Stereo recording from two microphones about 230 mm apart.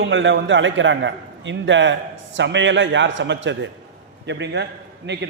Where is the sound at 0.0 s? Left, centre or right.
Right.